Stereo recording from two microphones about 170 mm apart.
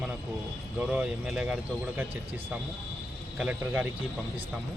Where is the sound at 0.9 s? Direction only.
Centre (ahead or behind).